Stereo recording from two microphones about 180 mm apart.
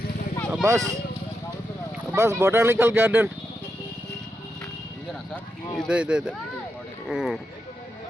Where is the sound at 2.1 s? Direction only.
15° right (ahead or behind).